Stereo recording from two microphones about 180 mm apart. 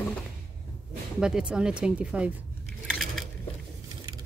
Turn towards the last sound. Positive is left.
turn(degrees=0)  # may be behind; listen again after turning